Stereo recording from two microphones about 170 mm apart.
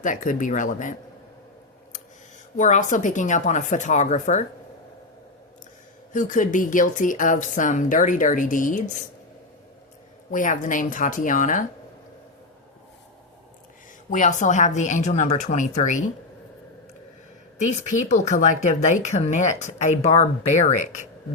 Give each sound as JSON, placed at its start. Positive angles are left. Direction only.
{"t": 0.0, "sound": "speech", "side_deg": 50}
{"t": 2.6, "sound": "speech", "side_deg": 45}
{"t": 6.1, "sound": "speech", "side_deg": 50}
{"t": 10.3, "sound": "speech", "side_deg": 50}
{"t": 14.1, "sound": "speech", "side_deg": 45}
{"t": 17.6, "sound": "speech", "side_deg": 45}